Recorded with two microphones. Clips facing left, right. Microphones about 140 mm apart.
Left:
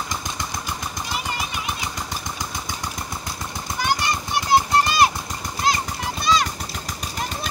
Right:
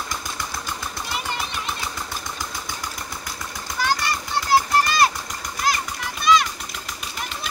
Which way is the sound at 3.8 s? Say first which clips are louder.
Even; 20° left (ahead or behind).